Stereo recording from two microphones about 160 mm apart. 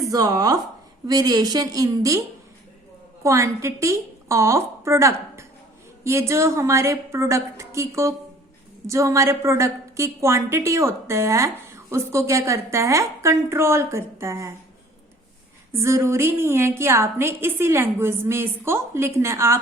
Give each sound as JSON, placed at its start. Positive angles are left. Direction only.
{"t": 0.1, "sound": "a woman's voice", "side_deg": -25}
{"t": 3.2, "sound": "a woman's voice", "side_deg": -20}
{"t": 15.7, "sound": "a woman's voice", "side_deg": -15}